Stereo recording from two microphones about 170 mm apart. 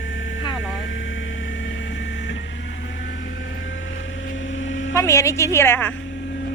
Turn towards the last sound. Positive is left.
turn(degrees=10)  # may be behind; listen again after turning